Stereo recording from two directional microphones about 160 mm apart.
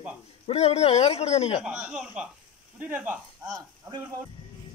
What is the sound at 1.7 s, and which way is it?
Speech, 5° right (ahead or behind).